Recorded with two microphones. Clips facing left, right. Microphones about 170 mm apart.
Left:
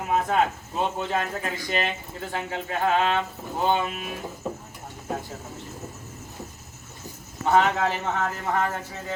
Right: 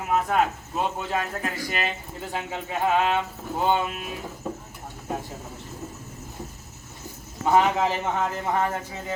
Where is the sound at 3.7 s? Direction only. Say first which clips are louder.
Even; centre (ahead or behind).